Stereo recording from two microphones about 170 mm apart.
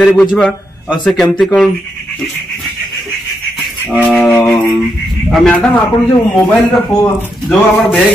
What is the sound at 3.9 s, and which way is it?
Music, 10° right (ahead or behind).